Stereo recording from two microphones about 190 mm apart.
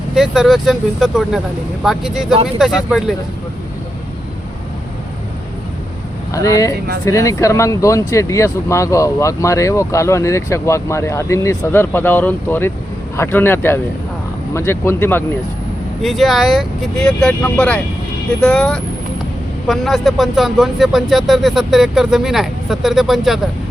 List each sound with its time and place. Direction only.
0.1 s speech: centre (ahead or behind)
6.3 s speech: 15° left (ahead or behind)
16.0 s speech: centre (ahead or behind)